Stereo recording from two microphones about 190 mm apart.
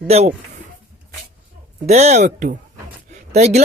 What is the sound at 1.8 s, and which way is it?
Speech, 35° right (ahead or behind).